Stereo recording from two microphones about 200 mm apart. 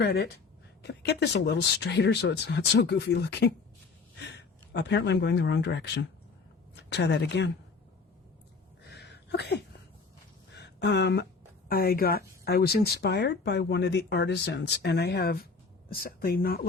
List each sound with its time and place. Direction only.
0.0 s speech: 55° left (ahead or behind)
4.7 s speech: 60° left (ahead or behind)
8.8 s a sound: 55° left (ahead or behind)
11.7 s speech: 50° left (ahead or behind)